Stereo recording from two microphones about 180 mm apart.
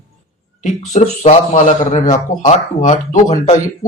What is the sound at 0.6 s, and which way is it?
Speech, 40° left (ahead or behind).